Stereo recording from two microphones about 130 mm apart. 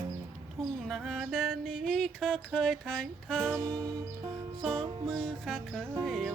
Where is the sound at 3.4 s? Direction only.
20° right (ahead or behind).